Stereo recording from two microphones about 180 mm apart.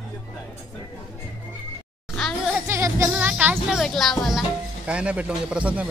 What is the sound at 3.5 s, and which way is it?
Speech, 5° left (ahead or behind).